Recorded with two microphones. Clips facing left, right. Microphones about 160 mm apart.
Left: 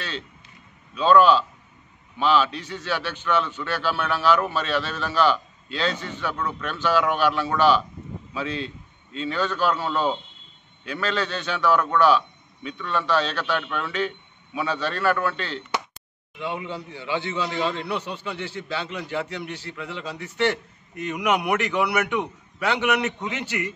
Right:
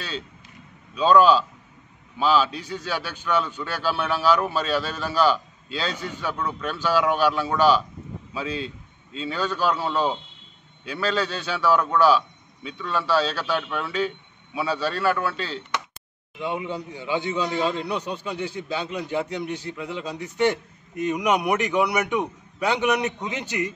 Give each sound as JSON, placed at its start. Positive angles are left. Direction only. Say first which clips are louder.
{"t": 0.9, "sound": "a man's voice", "louder": "even", "side_deg": -10}